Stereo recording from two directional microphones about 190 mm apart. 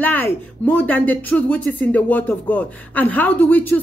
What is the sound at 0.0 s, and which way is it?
Speech, 10° left (ahead or behind).